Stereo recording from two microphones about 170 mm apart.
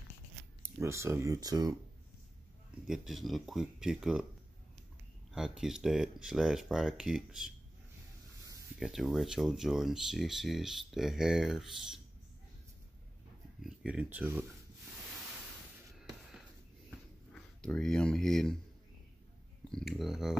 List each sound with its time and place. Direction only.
0.6 s speech: 15° right (ahead or behind)
2.9 s speech: centre (ahead or behind)
5.3 s speech: 5° right (ahead or behind)
8.7 s speech: centre (ahead or behind)
13.6 s speech: 5° right (ahead or behind)
17.3 s speech: 5° left (ahead or behind)
19.7 s speech: centre (ahead or behind)